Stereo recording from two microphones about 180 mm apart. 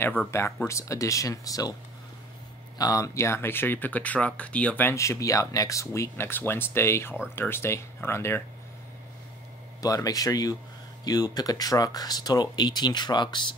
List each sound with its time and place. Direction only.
0.3 s speech: 15° left (ahead or behind)
2.8 s speech: 20° left (ahead or behind)
9.8 s speech: 20° left (ahead or behind)